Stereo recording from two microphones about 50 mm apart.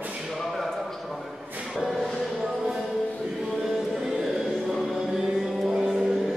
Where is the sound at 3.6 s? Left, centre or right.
Centre.